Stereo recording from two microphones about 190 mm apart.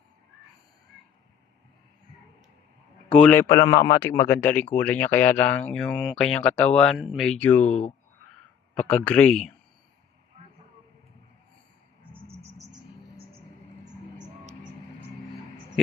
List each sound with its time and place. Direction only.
3.1 s speech: 10° left (ahead or behind)
7.6 s speech: 40° left (ahead or behind)
8.7 s speech: 10° left (ahead or behind)